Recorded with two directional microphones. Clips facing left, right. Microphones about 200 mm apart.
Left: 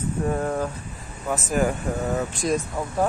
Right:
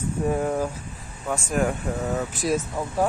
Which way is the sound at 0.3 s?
10° right (ahead or behind).